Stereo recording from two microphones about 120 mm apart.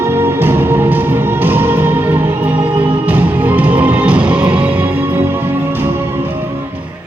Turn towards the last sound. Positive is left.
turn(degrees=-20)  # may be behind; listen again after turning